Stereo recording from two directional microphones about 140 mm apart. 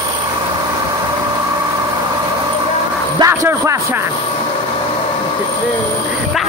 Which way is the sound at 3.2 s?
20° right (ahead or behind).